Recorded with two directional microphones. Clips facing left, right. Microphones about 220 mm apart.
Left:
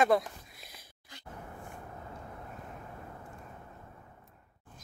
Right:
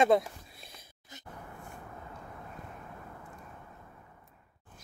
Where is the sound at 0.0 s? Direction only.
25° right (ahead or behind).